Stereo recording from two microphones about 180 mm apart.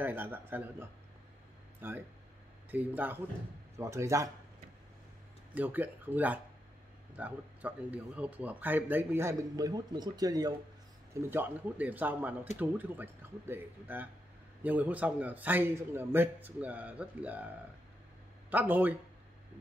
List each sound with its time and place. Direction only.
0.0 s speech: 10° right (ahead or behind)
5.5 s speech: 10° right (ahead or behind)
18.5 s speech: 10° right (ahead or behind)